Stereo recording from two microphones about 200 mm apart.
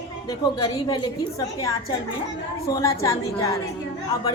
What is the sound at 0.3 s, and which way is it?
A woman's voice, 20° left (ahead or behind).